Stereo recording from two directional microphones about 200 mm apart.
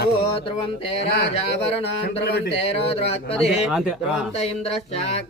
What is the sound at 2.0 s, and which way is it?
Speech, 55° left (ahead or behind).